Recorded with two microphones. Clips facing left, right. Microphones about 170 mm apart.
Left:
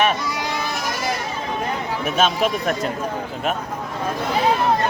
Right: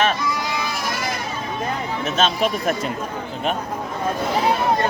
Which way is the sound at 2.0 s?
10° left (ahead or behind).